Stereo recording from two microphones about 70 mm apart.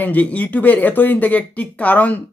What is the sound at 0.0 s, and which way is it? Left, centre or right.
Speech, left.